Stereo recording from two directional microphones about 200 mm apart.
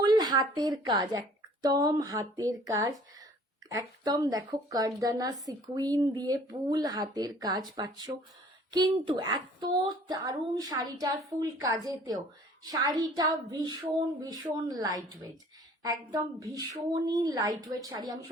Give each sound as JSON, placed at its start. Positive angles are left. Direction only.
{"t": 0.0, "sound": "a woman's voice", "side_deg": -20}